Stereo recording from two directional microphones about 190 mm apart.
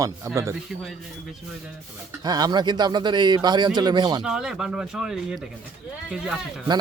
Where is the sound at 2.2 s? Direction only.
20° right (ahead or behind).